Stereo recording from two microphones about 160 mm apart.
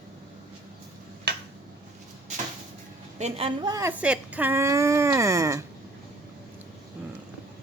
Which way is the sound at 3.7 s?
20° right (ahead or behind).